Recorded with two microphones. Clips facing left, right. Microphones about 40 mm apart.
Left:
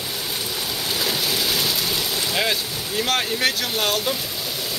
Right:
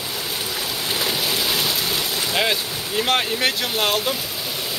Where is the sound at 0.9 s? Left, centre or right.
Centre.